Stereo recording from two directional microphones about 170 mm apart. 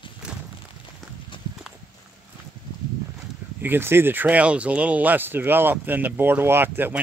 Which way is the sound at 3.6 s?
10° right (ahead or behind).